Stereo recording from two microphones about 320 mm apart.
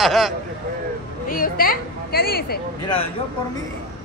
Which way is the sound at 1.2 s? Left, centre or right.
Left.